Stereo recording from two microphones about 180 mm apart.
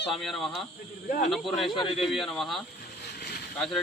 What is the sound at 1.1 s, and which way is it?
Speech, 45° left (ahead or behind).